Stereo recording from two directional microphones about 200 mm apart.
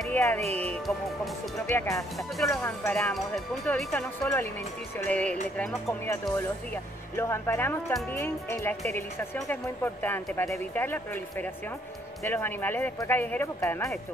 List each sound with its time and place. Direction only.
0.0 s music: 10° left (ahead or behind)
0.6 s speech: 5° left (ahead or behind)
1.7 s speech: 15° left (ahead or behind)
10.0 s speech: 10° left (ahead or behind)